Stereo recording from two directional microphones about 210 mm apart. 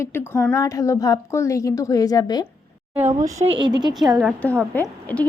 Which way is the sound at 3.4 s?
25° right (ahead or behind).